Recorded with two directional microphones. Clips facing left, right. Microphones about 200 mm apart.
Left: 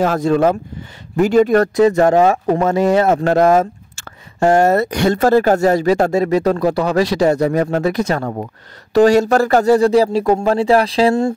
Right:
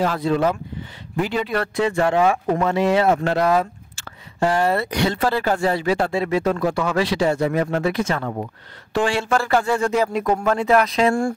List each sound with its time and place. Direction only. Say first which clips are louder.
0.0 s speech: left 5 dB; 45° left (ahead or behind); by 11.3 s 25° left (ahead or behind)